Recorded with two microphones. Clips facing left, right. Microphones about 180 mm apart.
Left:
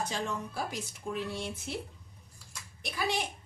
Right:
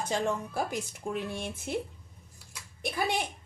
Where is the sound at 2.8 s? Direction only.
55° right (ahead or behind).